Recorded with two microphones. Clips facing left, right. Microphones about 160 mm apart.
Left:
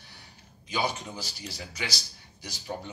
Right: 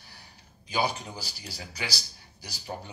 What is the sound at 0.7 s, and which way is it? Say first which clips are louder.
Speech: right 1 dB; 35° right (ahead or behind).